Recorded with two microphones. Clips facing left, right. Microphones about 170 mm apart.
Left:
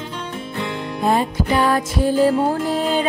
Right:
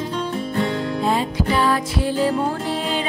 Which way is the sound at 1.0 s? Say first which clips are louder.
Left 4 dB; 50° left (ahead or behind).